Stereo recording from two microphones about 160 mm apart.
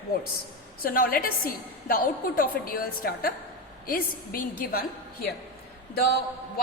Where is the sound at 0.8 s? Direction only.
65° left (ahead or behind).